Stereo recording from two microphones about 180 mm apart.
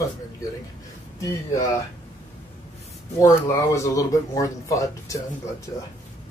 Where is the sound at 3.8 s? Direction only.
20° left (ahead or behind).